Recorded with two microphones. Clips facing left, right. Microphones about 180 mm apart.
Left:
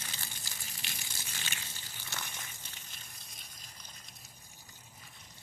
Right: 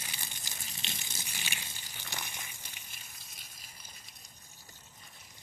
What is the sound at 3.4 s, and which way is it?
Gush, 10° right (ahead or behind).